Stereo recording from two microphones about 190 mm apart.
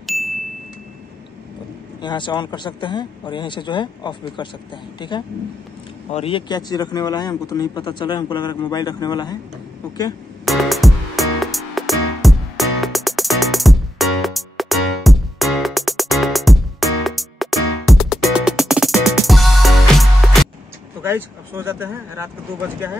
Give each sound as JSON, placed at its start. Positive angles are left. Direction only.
{"t": 0.0, "sound": "glockenspiel", "side_deg": 0}
{"t": 2.0, "sound": "a man's voice", "side_deg": 25}
{"t": 6.1, "sound": "a man's voice", "side_deg": 30}
{"t": 10.4, "sound": "music", "side_deg": 0}
{"t": 21.0, "sound": "speech", "side_deg": -15}